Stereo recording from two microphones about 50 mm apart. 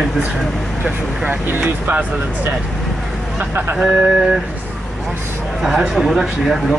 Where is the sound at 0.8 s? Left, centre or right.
Right.